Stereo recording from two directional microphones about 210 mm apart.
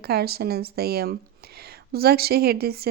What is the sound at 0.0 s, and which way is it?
A woman's voice, 50° right (ahead or behind).